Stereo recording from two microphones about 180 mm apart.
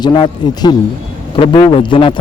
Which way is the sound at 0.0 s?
25° left (ahead or behind).